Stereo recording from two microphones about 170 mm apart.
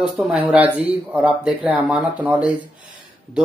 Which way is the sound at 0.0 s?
5° right (ahead or behind).